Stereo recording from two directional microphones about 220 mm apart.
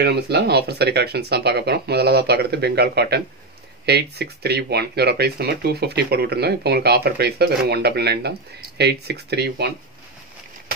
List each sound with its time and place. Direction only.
0.0 s speech: 45° right (ahead or behind)